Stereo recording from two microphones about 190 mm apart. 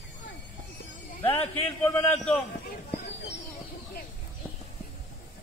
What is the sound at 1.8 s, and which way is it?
Speech, 5° left (ahead or behind).